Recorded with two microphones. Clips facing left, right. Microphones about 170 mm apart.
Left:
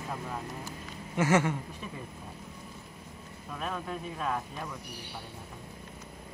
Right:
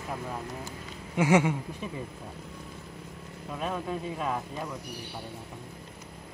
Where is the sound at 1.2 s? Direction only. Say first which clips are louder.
Right 3 dB; 15° right (ahead or behind).